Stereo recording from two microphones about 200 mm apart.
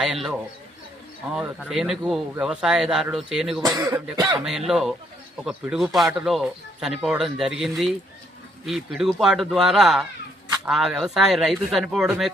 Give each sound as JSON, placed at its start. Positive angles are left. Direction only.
{"t": 0.0, "sound": "speech", "side_deg": 0}
{"t": 3.6, "sound": "speech", "side_deg": -20}
{"t": 4.4, "sound": "speech", "side_deg": 0}